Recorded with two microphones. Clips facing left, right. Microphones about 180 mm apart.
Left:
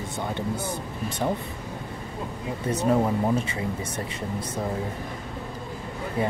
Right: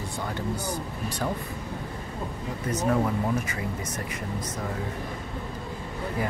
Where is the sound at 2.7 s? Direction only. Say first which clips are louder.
Left 3 dB; 25° left (ahead or behind).